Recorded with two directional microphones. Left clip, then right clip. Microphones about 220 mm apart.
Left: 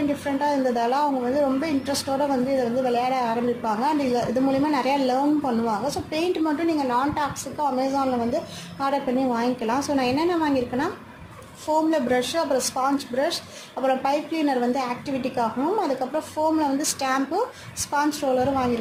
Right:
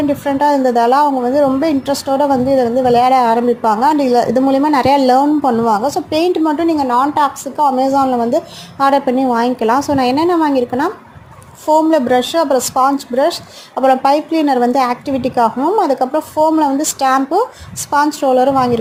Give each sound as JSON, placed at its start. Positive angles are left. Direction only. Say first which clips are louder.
{"t": 0.3, "sound": "a woman's voice", "louder": "right 11 dB", "side_deg": -25}